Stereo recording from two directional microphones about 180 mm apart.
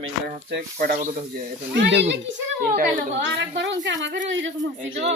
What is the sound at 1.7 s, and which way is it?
A woman's voice, 80° right.